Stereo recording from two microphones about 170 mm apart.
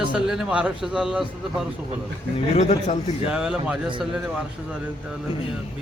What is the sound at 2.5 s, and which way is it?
Speech, 40° left (ahead or behind).